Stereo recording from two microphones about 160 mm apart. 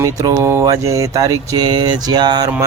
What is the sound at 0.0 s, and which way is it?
Speech, 20° right (ahead or behind).